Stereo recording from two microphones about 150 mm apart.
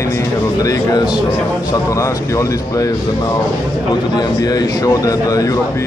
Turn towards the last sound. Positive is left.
turn(degrees=25)  # may be behind; listen again after turning